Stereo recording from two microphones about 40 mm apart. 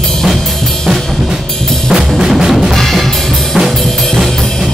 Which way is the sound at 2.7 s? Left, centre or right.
Centre.